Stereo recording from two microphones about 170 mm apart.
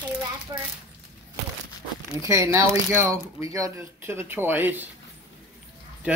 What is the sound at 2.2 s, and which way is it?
Speech, 15° right (ahead or behind).